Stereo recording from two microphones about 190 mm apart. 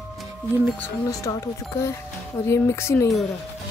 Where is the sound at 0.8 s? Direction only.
15° left (ahead or behind).